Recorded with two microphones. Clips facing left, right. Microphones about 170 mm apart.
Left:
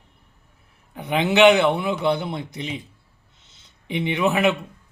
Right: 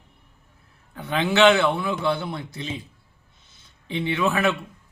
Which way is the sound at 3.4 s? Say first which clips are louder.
Left 4 dB; 15° left (ahead or behind).